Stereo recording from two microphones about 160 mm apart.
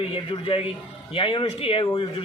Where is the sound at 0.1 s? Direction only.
35° left (ahead or behind).